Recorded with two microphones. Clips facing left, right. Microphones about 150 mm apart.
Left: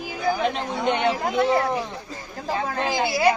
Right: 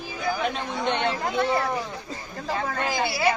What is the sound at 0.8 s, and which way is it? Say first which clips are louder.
Speech: left 3 dB; 10° left (ahead or behind).